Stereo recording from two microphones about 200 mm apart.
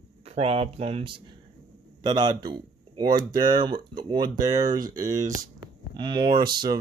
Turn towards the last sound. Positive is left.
turn(degrees=-20)  # may be behind; listen again after turning